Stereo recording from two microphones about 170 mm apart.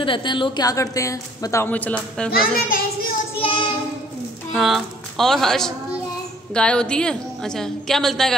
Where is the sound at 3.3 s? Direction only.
30° left (ahead or behind).